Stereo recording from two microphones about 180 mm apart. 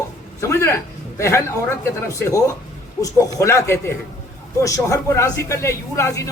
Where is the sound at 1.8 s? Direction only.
15° left (ahead or behind).